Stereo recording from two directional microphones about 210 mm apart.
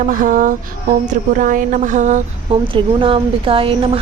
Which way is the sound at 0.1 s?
40° right (ahead or behind).